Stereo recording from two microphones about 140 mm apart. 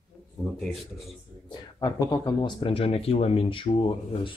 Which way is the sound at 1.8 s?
25° left (ahead or behind).